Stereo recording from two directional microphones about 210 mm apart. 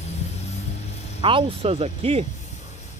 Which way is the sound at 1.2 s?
25° right (ahead or behind).